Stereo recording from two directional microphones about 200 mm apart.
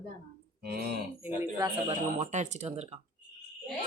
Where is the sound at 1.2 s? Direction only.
10° right (ahead or behind).